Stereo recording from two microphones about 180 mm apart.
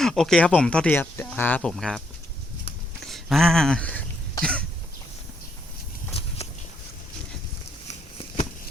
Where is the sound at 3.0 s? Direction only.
Centre (ahead or behind).